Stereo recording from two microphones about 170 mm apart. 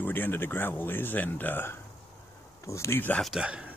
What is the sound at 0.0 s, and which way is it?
Speech, 10° left (ahead or behind).